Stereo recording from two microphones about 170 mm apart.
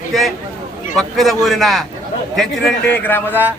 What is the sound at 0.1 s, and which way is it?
A man's voice, centre (ahead or behind).